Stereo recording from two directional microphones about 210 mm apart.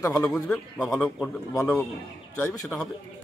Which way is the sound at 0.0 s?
15° left (ahead or behind).